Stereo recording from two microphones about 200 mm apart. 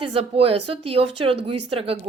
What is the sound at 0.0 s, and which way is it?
A woman's voice, 30° right (ahead or behind).